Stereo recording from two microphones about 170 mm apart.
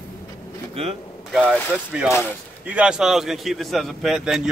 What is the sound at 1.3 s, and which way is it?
A man's voice, 5° right (ahead or behind).